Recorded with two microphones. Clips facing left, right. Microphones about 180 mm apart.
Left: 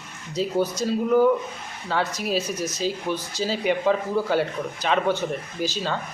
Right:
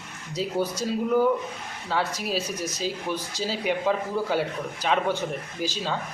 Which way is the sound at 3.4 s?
Centre (ahead or behind).